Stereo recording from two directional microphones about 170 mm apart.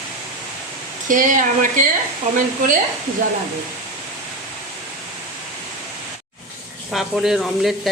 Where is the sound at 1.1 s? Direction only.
50° right (ahead or behind).